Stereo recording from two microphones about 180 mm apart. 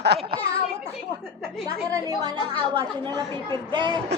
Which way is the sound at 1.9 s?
20° right (ahead or behind).